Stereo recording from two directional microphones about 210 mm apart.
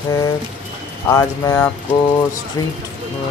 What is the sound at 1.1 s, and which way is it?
Speech, 15° left (ahead or behind).